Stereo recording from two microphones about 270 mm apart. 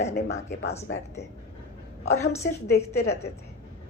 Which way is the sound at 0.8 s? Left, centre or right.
Left.